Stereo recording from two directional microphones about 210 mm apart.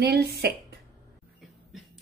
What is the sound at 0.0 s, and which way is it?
Speech, 50° right (ahead or behind).